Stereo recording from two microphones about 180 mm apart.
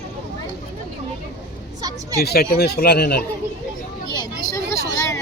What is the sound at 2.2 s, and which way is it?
Speech, 60° left (ahead or behind).